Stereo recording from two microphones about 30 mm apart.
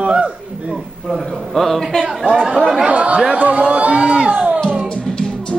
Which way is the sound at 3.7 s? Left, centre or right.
Right.